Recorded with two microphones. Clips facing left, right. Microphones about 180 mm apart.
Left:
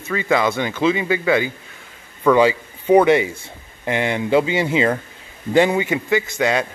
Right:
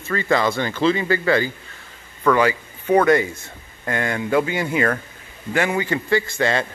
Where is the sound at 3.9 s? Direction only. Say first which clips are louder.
Left 3 dB; 20° left (ahead or behind).